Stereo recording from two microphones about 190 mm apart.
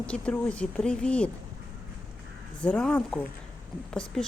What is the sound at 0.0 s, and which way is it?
Speech, 5° left (ahead or behind).